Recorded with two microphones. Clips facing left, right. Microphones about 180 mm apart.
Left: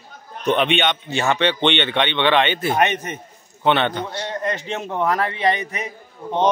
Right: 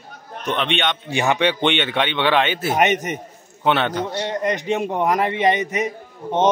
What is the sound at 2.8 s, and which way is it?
Speech, 20° right (ahead or behind).